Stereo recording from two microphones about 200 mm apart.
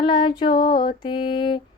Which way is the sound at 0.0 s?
25° left (ahead or behind).